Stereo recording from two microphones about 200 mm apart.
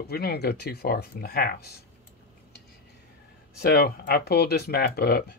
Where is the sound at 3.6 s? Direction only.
50° left (ahead or behind).